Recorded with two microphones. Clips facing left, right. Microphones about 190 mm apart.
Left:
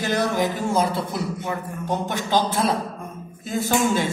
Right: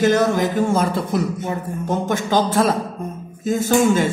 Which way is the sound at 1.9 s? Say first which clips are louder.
Right 3 dB; 45° right (ahead or behind).